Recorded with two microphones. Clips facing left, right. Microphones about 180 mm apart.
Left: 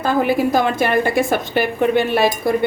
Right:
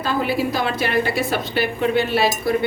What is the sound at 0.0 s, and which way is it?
A woman's voice, 50° left (ahead or behind).